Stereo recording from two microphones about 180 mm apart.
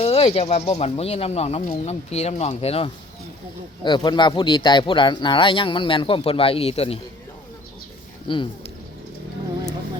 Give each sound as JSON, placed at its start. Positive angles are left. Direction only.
{"t": 0.0, "sound": "speech", "side_deg": 30}
{"t": 8.3, "sound": "speech", "side_deg": 25}